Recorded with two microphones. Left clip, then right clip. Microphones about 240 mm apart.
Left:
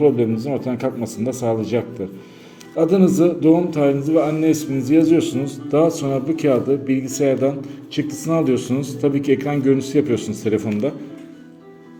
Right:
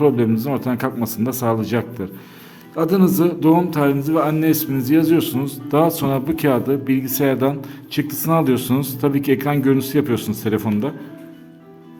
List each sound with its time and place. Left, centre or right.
0.2 s a man's voice: right